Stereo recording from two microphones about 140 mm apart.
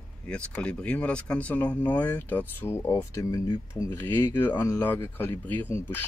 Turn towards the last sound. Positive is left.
turn(degrees=15)  # may be behind; listen again after turning